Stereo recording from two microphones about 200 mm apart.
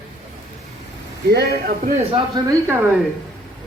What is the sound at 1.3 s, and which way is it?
Speech, 50° right (ahead or behind).